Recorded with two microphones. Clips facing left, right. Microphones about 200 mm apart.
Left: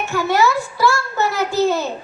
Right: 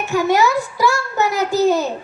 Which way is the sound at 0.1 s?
15° right (ahead or behind).